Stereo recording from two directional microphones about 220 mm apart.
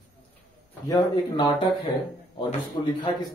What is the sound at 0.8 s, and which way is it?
Speech, 20° left (ahead or behind).